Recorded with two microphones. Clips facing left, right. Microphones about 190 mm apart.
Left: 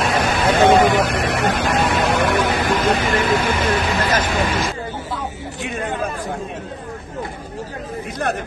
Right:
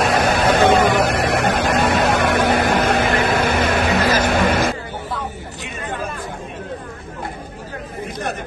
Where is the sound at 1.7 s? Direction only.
50° right (ahead or behind).